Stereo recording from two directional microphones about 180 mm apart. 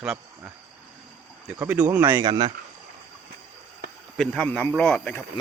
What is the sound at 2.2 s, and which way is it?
Speech, 25° right (ahead or behind).